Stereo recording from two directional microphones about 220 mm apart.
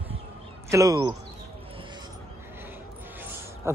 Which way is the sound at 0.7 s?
15° right (ahead or behind).